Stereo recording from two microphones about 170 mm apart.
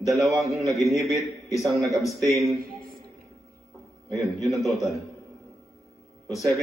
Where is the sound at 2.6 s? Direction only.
60° right (ahead or behind).